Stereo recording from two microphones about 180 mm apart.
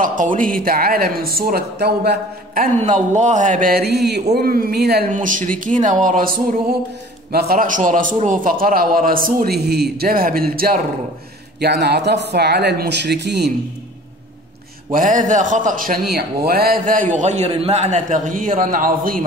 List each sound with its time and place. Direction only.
0.0 s a man's voice: 45° right (ahead or behind)
2.8 s a man's voice: 40° right (ahead or behind); by 5.0 s 60° right (ahead or behind)
5.1 s a man's voice: 45° right (ahead or behind); by 13.5 s 65° right (ahead or behind)
14.9 s a man's voice: 50° right (ahead or behind)
16.1 s a man's voice: 60° right (ahead or behind)